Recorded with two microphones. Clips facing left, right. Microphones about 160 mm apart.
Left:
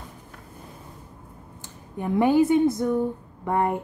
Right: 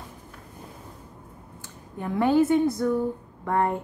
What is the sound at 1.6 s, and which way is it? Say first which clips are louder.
Speech: left 3 dB; 15° left (ahead or behind).